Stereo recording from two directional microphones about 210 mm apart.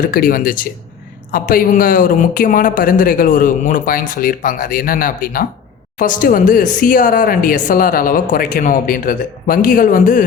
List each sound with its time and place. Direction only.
0.0 s speech: 40° left (ahead or behind)